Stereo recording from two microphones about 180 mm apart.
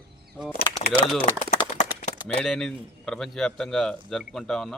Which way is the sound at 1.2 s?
40° left (ahead or behind).